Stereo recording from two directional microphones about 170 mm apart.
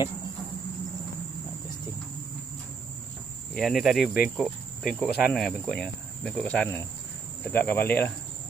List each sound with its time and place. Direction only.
3.5 s speech: centre (ahead or behind)